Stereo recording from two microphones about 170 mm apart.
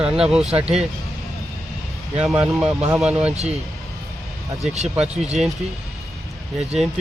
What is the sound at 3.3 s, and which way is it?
Speech, 40° right (ahead or behind).